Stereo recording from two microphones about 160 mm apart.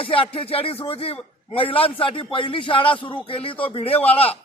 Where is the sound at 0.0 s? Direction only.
35° left (ahead or behind).